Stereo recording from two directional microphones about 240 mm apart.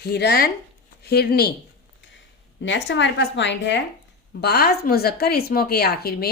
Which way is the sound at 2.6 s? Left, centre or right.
Left.